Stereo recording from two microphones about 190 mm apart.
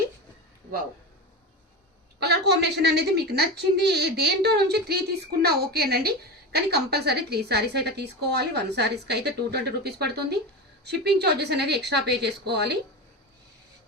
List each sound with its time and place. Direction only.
2.1 s a woman's voice: 60° right (ahead or behind)